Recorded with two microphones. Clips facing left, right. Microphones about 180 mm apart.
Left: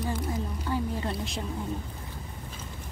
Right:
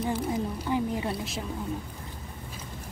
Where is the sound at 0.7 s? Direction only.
15° right (ahead or behind).